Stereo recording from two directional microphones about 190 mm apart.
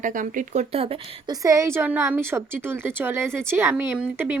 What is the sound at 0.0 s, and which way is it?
Speech, 45° right (ahead or behind).